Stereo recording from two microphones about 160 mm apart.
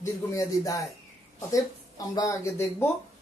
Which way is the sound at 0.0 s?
20° left (ahead or behind).